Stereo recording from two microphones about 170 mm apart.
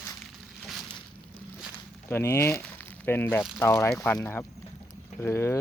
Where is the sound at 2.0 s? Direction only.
15° left (ahead or behind).